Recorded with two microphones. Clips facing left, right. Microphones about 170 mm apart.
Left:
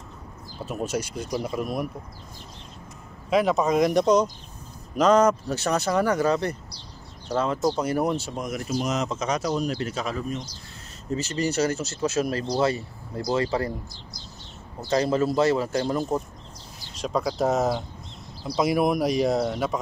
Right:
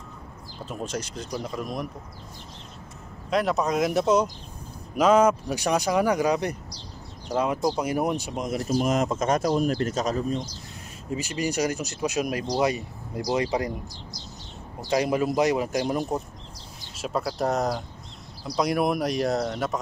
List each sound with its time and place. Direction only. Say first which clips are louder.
0.7 s speech: left 4 dB; 10° left (ahead or behind)
3.3 s speech: left 3 dB; centre (ahead or behind); by 8.5 s 15° right (ahead or behind)
8.6 s speech: right 4 dB; 50° right (ahead or behind)
11.1 s speech: left 2 dB; 10° right (ahead or behind)
14.9 s speech: left 1 dB; 15° right (ahead or behind)
16.9 s speech: left 2 dB; 5° right (ahead or behind)